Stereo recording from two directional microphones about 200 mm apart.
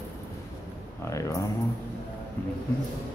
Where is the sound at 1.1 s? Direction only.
15° left (ahead or behind).